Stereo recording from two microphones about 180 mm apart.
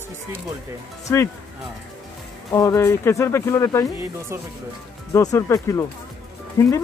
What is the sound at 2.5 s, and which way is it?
Speech, 15° left (ahead or behind).